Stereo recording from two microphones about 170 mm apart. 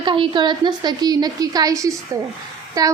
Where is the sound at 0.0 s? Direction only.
25° right (ahead or behind).